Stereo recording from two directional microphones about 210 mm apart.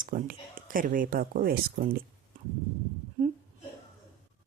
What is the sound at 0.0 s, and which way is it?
Speech, 40° right (ahead or behind).